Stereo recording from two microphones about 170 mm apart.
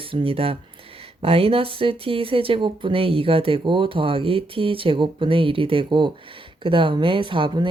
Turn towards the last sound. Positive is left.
turn(degrees=-30)  # may be behind; listen again after turning